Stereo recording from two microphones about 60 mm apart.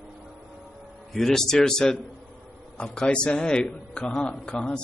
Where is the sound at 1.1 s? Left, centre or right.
Centre.